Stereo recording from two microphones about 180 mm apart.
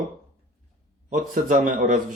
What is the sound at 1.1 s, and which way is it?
Speech, 50° right (ahead or behind).